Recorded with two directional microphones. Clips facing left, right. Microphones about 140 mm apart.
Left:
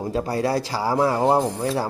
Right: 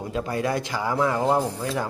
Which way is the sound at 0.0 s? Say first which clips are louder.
Left 3 dB; 35° left (ahead or behind).